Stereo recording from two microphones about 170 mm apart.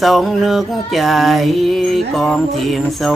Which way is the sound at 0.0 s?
Centre (ahead or behind).